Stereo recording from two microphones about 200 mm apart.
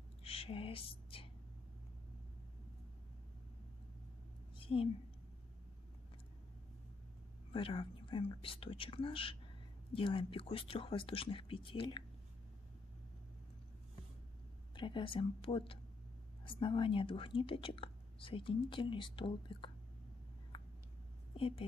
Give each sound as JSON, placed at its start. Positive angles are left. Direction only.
{"t": 0.2, "sound": "speech", "side_deg": 30}
{"t": 4.6, "sound": "a sound", "side_deg": 25}
{"t": 7.5, "sound": "speech", "side_deg": 25}
{"t": 14.8, "sound": "speech", "side_deg": 25}
{"t": 20.5, "sound": "a sound", "side_deg": 25}
{"t": 21.4, "sound": "a woman's voice", "side_deg": 30}